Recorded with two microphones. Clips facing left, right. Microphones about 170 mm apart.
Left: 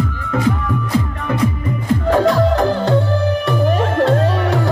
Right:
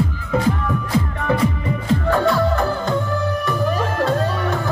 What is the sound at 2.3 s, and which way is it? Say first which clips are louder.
Music: left 4 dB; 35° left (ahead or behind).